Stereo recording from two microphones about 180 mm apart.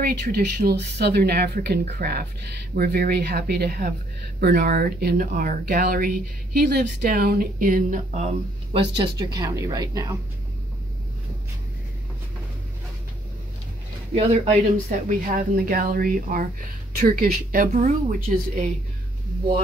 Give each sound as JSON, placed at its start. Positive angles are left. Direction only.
{"t": 0.0, "sound": "speech", "side_deg": -60}
{"t": 14.1, "sound": "speech", "side_deg": -40}